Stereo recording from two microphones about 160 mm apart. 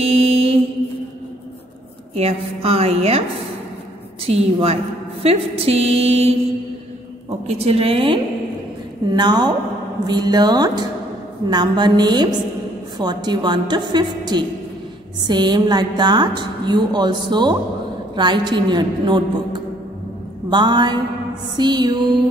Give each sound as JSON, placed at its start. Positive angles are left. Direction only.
{"t": 0.0, "sound": "mantra", "side_deg": -40}
{"t": 2.1, "sound": "a woman's voice", "side_deg": -40}
{"t": 4.3, "sound": "a woman's voice", "side_deg": -40}